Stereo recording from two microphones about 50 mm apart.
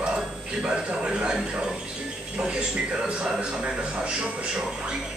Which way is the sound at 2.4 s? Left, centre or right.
Right.